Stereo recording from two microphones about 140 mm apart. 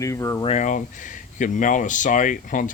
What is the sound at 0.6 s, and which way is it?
Speech, 65° left (ahead or behind).